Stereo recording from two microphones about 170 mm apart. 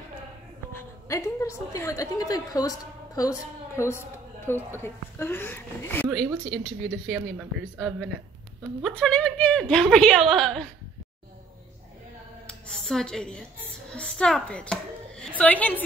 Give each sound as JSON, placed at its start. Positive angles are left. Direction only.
{"t": 1.0, "sound": "a woman's voice", "side_deg": 20}
{"t": 6.0, "sound": "speech", "side_deg": 0}
{"t": 12.4, "sound": "a child's voice", "side_deg": 0}